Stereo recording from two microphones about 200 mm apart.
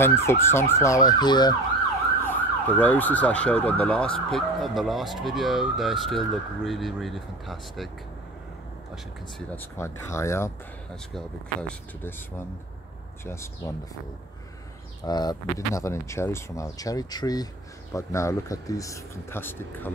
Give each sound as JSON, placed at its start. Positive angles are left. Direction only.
{"t": 0.0, "sound": "speech", "side_deg": 10}
{"t": 2.2, "sound": "emergency vehicle", "side_deg": 5}
{"t": 4.3, "sound": "speech", "side_deg": 0}
{"t": 9.6, "sound": "speech", "side_deg": 15}
{"t": 13.2, "sound": "speech", "side_deg": 15}
{"t": 15.0, "sound": "speech", "side_deg": 20}